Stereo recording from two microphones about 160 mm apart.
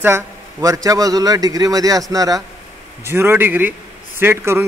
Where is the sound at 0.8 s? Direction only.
20° right (ahead or behind).